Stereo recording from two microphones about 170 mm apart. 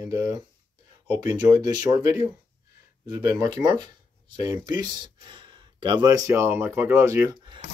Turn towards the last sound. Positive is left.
turn(degrees=-30)  # may be behind; listen again after turning